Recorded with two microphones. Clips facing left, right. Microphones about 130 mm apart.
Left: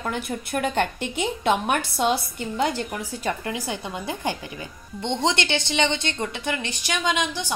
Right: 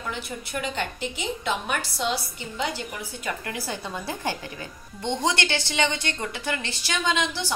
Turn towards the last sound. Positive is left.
turn(degrees=15)  # may be behind; listen again after turning